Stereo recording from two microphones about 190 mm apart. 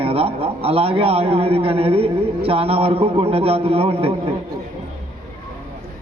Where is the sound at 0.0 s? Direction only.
30° right (ahead or behind).